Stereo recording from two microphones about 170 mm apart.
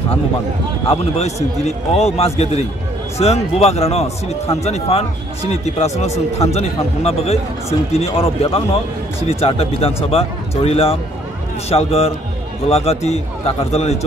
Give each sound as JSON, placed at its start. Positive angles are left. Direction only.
{"t": 0.8, "sound": "speech", "side_deg": 40}